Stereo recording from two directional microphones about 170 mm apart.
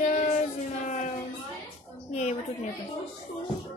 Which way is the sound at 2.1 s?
40° left (ahead or behind).